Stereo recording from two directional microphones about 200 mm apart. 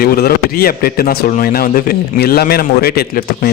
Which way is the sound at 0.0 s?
50° left (ahead or behind).